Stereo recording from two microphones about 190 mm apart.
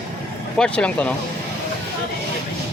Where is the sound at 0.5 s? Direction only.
5° left (ahead or behind).